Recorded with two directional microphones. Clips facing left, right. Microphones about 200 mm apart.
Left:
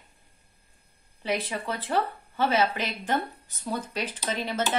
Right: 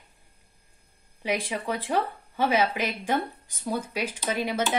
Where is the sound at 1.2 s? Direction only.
10° right (ahead or behind).